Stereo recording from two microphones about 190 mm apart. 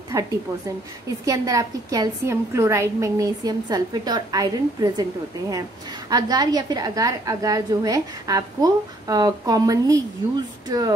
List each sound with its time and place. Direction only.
0.1 s a woman's voice: 15° right (ahead or behind)
6.0 s a woman's voice: 20° right (ahead or behind)